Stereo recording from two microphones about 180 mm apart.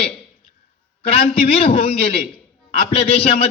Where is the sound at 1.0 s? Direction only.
35° left (ahead or behind).